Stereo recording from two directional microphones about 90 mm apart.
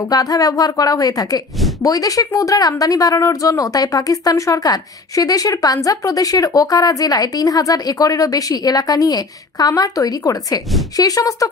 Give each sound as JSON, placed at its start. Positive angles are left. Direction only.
{"t": 0.1, "sound": "a woman's voice", "side_deg": 40}